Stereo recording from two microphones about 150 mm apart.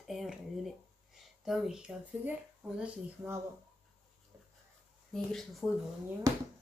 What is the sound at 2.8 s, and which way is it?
Speech, 15° right (ahead or behind).